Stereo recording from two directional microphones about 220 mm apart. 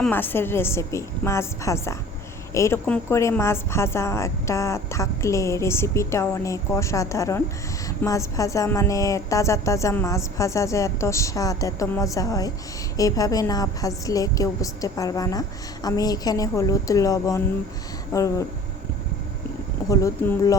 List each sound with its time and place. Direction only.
0.0 s a woman's voice: 10° left (ahead or behind)
19.9 s a woman's voice: 15° left (ahead or behind)